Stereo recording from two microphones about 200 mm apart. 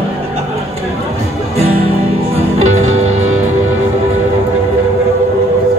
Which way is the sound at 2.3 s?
35° right (ahead or behind).